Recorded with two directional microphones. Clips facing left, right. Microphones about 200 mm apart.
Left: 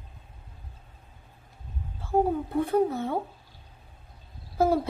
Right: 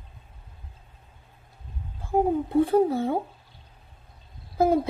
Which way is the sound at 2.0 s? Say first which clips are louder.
Right 1 dB; 15° right (ahead or behind).